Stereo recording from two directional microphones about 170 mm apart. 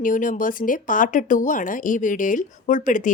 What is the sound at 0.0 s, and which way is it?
Speech, 50° left (ahead or behind).